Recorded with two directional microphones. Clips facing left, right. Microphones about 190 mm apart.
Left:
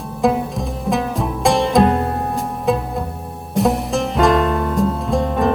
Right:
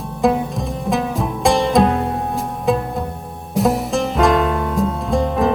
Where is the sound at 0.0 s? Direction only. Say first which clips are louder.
Even; centre (ahead or behind).